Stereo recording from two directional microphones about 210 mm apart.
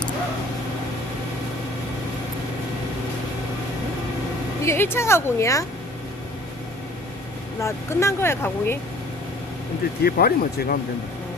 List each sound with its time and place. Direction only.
4.6 s speech: 10° left (ahead or behind)
7.6 s speech: 15° left (ahead or behind)
10.0 s speech: 45° left (ahead or behind)